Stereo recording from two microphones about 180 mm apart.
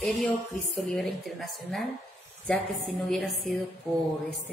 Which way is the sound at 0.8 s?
Centre (ahead or behind).